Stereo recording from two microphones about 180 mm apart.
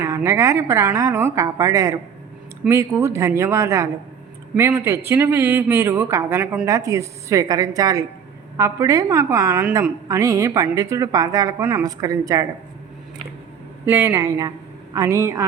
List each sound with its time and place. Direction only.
0.0 s a woman's voice: 15° right (ahead or behind)
13.8 s speech: 15° right (ahead or behind)